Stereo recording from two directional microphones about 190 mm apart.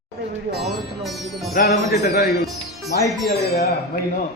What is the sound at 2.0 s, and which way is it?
Speech, 60° left (ahead or behind).